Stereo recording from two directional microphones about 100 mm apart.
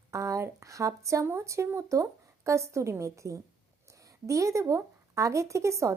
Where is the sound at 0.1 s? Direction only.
30° right (ahead or behind).